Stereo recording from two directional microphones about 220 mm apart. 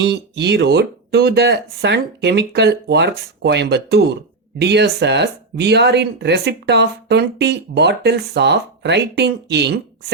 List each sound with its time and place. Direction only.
0.0 s speech: 50° right (ahead or behind)